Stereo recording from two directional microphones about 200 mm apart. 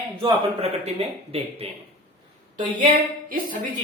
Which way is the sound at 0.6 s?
30° right (ahead or behind).